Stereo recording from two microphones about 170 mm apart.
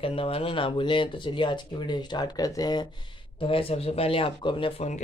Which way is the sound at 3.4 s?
35° left (ahead or behind).